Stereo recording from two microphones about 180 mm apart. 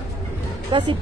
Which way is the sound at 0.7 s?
25° right (ahead or behind).